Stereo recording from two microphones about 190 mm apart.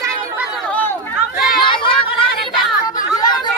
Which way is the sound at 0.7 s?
10° left (ahead or behind).